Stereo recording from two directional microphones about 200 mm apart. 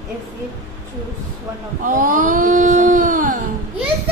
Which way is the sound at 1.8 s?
40° right (ahead or behind).